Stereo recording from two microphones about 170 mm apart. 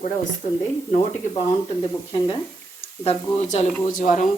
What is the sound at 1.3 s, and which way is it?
Speech, 30° left (ahead or behind).